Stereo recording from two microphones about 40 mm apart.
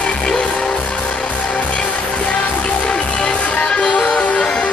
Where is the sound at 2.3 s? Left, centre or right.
Left.